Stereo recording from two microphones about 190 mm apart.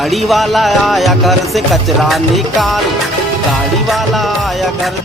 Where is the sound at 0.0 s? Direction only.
Centre (ahead or behind).